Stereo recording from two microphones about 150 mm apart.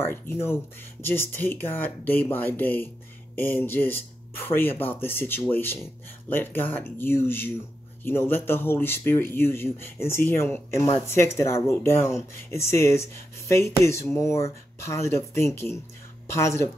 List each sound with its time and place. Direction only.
0.0 s speech: 15° left (ahead or behind)